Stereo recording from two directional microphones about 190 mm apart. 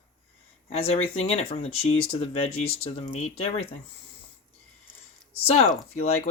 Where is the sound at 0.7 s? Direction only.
30° left (ahead or behind).